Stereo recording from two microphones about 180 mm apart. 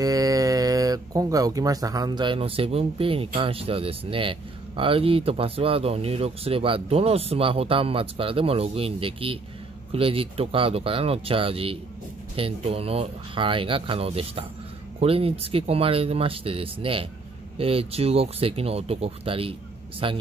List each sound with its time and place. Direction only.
0.0 s speech: 20° right (ahead or behind)